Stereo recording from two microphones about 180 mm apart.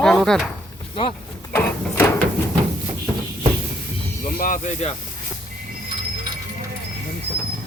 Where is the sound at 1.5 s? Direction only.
10° left (ahead or behind).